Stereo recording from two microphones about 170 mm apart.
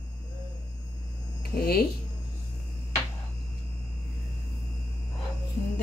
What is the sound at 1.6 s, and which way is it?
Speech, 60° left (ahead or behind).